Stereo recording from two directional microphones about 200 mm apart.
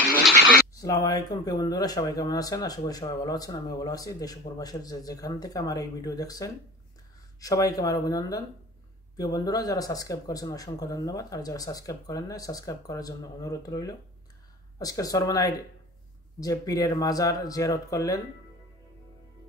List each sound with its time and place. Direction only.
0.7 s speech: 15° left (ahead or behind)